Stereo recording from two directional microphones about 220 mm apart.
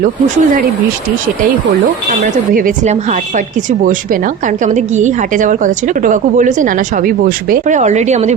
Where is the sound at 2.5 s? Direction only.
35° right (ahead or behind).